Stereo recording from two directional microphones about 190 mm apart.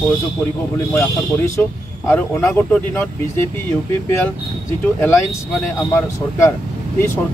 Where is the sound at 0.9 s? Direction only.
15° left (ahead or behind).